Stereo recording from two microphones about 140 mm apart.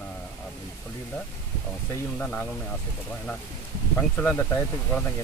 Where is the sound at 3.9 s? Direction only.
10° left (ahead or behind).